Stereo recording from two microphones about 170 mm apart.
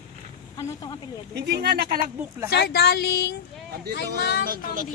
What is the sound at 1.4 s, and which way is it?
Speech, 75° right (ahead or behind).